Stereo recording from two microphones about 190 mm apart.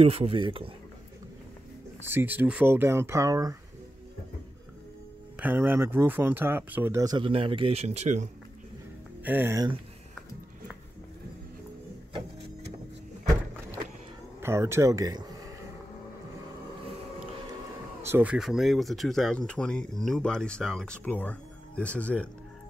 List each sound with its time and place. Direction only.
0.0 s speech: 30° right (ahead or behind)
2.0 s speech: 10° right (ahead or behind)
5.4 s speech: 10° right (ahead or behind); by 8.3 s 40° right (ahead or behind)
9.2 s speech: 10° right (ahead or behind)
14.4 s speech: 15° right (ahead or behind)
18.0 s speech: 10° right (ahead or behind); by 22.3 s 5° left (ahead or behind)